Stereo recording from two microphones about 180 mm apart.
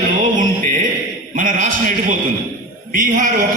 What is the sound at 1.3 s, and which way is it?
Speech, 50° right (ahead or behind).